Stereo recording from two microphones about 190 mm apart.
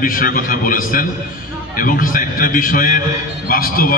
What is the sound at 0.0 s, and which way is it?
A man's voice, 45° left (ahead or behind).